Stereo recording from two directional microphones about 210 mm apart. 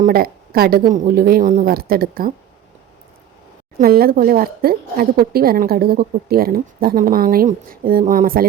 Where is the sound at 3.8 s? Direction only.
45° right (ahead or behind).